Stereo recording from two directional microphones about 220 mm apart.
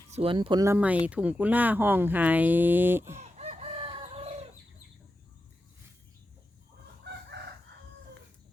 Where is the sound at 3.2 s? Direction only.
30° right (ahead or behind).